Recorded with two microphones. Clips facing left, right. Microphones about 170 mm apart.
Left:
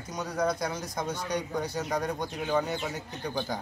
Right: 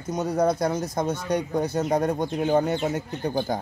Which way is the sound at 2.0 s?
50° right (ahead or behind).